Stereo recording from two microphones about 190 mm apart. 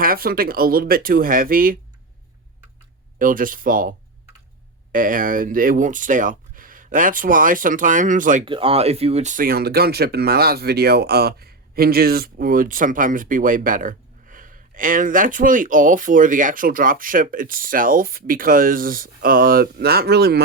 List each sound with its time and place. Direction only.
0.0 s speech: 50° right (ahead or behind)
3.2 s speech: 45° right (ahead or behind)
8.4 s speech: 30° right (ahead or behind); by 20.4 s 60° right (ahead or behind)